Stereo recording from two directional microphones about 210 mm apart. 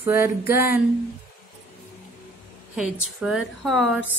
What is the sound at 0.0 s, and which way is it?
Female singing, 10° right (ahead or behind).